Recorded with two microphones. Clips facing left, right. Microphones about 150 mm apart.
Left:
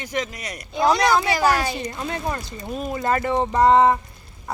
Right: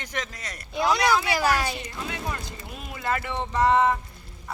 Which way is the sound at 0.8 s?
35° left (ahead or behind).